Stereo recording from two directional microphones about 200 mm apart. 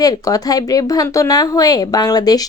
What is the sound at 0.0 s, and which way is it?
Speech, 20° left (ahead or behind).